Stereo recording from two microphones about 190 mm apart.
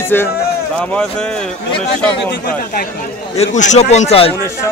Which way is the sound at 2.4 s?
50° left (ahead or behind).